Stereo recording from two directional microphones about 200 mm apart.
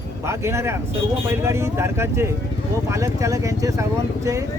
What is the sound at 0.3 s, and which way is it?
Speech, 15° right (ahead or behind).